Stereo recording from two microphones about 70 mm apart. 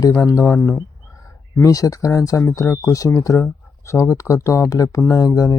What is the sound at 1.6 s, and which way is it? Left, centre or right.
Speech, left.